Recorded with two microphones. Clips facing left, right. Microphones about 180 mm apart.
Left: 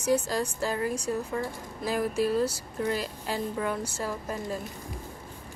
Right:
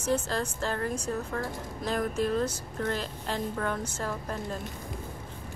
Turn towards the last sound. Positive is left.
turn(degrees=10)  # may be behind; listen again after turning